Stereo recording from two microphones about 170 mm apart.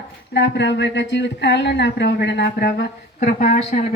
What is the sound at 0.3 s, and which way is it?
Speech, 90° left.